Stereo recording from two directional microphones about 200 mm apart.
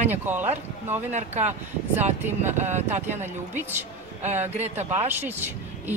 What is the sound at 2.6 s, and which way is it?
Speech, 35° right (ahead or behind).